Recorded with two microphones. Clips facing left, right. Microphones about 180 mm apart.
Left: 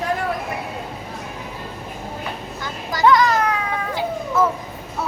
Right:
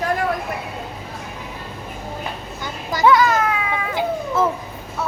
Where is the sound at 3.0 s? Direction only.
5° right (ahead or behind).